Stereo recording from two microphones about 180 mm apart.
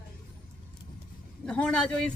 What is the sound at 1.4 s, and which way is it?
Speech, 5° left (ahead or behind).